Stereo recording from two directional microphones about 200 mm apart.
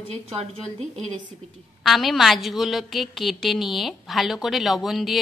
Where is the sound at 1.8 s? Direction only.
Centre (ahead or behind).